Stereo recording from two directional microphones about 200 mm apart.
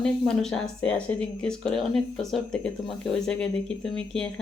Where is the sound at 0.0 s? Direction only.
5° left (ahead or behind).